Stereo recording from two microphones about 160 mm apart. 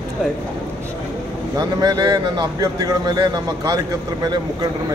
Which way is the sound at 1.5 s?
25° right (ahead or behind).